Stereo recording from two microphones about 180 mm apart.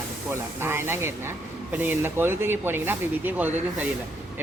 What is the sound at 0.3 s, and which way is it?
Speech, 15° right (ahead or behind).